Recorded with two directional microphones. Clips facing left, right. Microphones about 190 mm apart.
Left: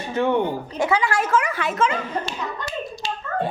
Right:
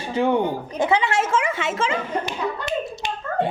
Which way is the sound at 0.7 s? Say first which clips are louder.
Right 1 dB; 20° right (ahead or behind).